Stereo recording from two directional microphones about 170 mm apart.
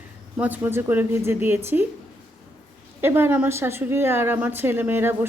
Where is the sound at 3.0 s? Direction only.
15° right (ahead or behind).